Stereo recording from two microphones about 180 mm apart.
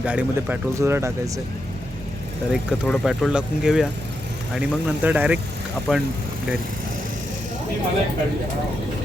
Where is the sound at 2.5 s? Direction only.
Centre (ahead or behind).